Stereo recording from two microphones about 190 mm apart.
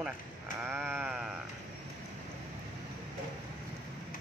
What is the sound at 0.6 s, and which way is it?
Sheep, 10° right (ahead or behind).